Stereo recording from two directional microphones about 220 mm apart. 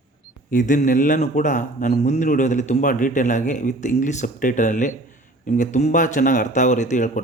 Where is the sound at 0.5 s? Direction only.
35° left (ahead or behind).